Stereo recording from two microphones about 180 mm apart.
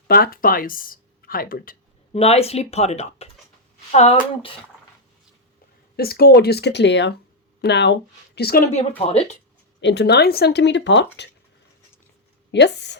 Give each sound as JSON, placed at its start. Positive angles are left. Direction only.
{"t": 0.1, "sound": "speech", "side_deg": 55}
{"t": 2.1, "sound": "speech", "side_deg": 35}
{"t": 6.0, "sound": "speech", "side_deg": 60}
{"t": 8.4, "sound": "speech", "side_deg": 60}
{"t": 9.0, "sound": "speech", "side_deg": 35}
{"t": 9.8, "sound": "speech", "side_deg": 70}
{"t": 12.5, "sound": "speech", "side_deg": 75}